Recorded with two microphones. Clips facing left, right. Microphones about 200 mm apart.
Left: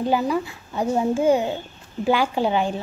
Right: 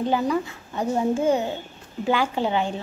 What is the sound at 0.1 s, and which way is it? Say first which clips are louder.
Speech: left 1 dB; 10° left (ahead or behind).